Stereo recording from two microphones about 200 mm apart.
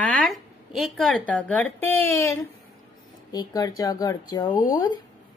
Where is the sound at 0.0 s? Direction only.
Centre (ahead or behind).